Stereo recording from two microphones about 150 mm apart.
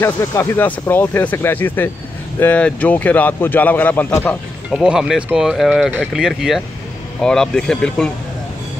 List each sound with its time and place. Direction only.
0.0 s speech: 20° left (ahead or behind)
4.6 s speech: 5° right (ahead or behind)